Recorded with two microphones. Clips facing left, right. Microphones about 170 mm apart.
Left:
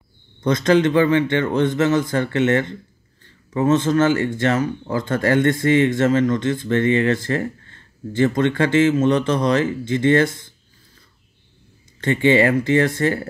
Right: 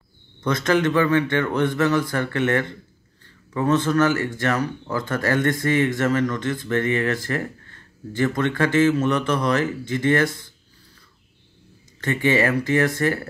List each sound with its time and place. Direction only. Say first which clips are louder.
0.7 s speech: left 4 dB; 25° left (ahead or behind)
12.0 s speech: left 4 dB; 25° left (ahead or behind)